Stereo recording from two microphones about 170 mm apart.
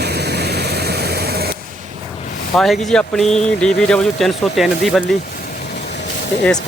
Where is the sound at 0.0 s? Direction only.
75° right (ahead or behind).